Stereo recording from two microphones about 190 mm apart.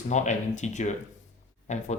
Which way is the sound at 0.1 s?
40° left (ahead or behind).